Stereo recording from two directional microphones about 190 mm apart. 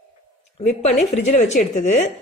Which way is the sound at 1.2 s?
40° left (ahead or behind).